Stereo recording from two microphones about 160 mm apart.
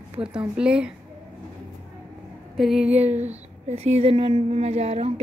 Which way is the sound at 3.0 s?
45° right (ahead or behind).